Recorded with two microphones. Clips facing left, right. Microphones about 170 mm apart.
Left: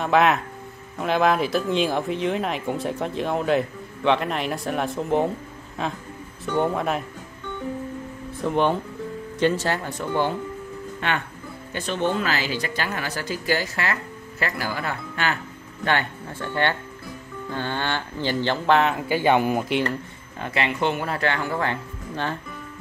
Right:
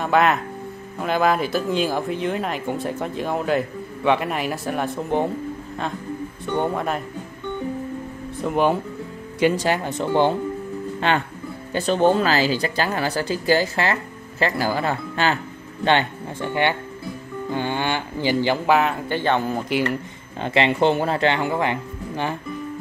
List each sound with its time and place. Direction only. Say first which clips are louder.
0.0 s speech: even; centre (ahead or behind)
6.4 s speech: left 1 dB; centre (ahead or behind)
8.4 s speech: right 2 dB; 5° right (ahead or behind); by 19.6 s 15° left (ahead or behind)
20.3 s speech: right 6 dB; 25° right (ahead or behind)